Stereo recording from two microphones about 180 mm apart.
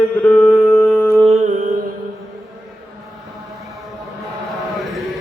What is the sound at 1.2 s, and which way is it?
Music, 40° right (ahead or behind).